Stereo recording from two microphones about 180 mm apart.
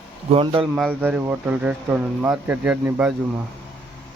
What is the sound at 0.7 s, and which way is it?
Speech, 10° right (ahead or behind).